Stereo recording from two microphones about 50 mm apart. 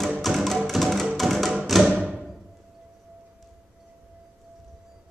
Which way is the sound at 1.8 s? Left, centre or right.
Centre.